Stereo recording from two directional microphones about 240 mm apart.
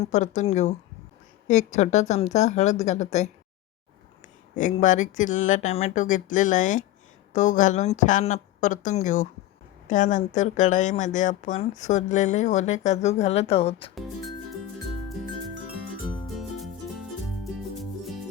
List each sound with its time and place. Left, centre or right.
0.0 s speech: left
4.5 s speech: left
16.2 s music: centre